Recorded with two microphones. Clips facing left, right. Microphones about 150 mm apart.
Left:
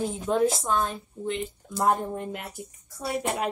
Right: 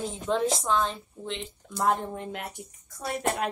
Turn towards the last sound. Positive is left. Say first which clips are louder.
# left 1 dB
turn(degrees=5)  # may be behind; listen again after turning